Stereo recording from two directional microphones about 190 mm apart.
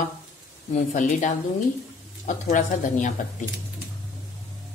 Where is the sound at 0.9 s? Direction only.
40° left (ahead or behind).